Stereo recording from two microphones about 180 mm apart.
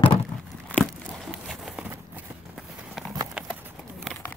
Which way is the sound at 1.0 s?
Centre (ahead or behind).